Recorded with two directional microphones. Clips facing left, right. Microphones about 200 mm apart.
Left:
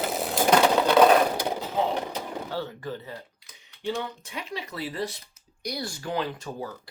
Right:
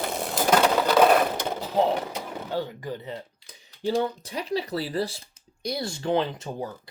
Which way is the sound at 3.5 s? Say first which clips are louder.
Right 4 dB; 35° right (ahead or behind).